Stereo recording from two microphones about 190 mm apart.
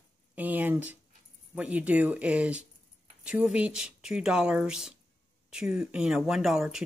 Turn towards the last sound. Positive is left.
turn(degrees=0)  # may be behind; listen again after turning